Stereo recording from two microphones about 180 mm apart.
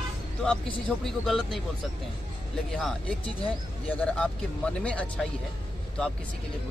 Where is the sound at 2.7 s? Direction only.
5° left (ahead or behind).